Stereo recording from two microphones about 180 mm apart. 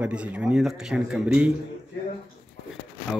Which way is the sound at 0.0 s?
5° right (ahead or behind).